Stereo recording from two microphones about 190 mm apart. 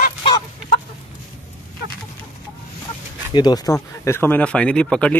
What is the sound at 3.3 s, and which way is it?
Speech, 20° left (ahead or behind).